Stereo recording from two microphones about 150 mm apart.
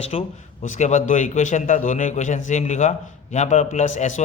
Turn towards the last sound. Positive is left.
turn(degrees=50)  # may be behind; listen again after turning